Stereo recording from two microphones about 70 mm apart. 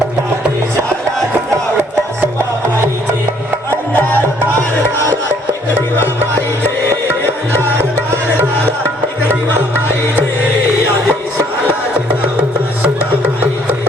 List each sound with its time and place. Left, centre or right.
2.4 s music: right
3.7 s music: left
5.3 s music: right
7.8 s music: right
12.8 s music: right